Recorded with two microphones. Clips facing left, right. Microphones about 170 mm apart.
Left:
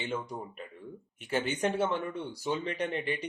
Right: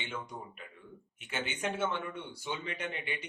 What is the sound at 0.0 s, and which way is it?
Speech, 35° left (ahead or behind).